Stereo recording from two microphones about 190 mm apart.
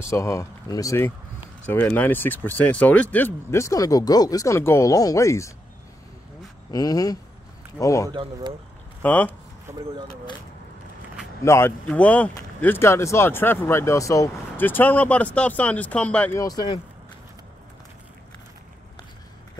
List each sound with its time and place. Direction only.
0.0 s speech: 15° left (ahead or behind)
6.7 s speech: 20° left (ahead or behind)
8.1 s speech: 25° right (ahead or behind)
9.0 s speech: 10° left (ahead or behind)
9.7 s speech: 15° right (ahead or behind)
11.4 s speech: 15° left (ahead or behind)
16.3 s speech: 20° left (ahead or behind)